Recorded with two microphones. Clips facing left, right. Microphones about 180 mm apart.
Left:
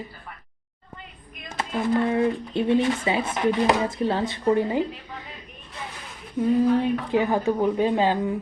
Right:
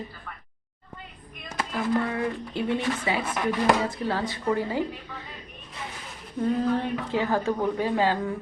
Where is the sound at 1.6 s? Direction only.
25° left (ahead or behind).